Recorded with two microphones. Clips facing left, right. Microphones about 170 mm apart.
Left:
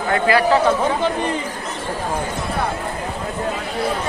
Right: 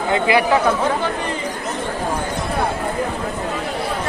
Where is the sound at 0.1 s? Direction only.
15° right (ahead or behind).